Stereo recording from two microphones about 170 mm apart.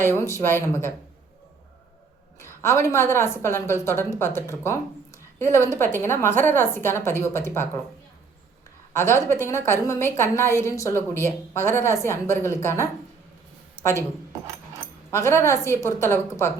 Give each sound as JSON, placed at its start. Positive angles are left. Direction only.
{"t": 0.0, "sound": "a woman's voice", "side_deg": 15}
{"t": 2.4, "sound": "a woman's voice", "side_deg": 15}
{"t": 8.9, "sound": "a woman's voice", "side_deg": 15}
{"t": 13.8, "sound": "a sound", "side_deg": -10}
{"t": 15.1, "sound": "a woman's voice", "side_deg": 15}